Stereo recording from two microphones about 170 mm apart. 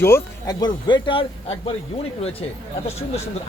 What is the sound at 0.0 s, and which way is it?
A man's voice, 20° left (ahead or behind).